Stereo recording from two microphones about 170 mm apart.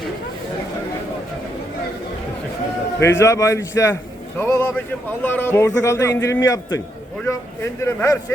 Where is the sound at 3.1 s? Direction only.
20° left (ahead or behind).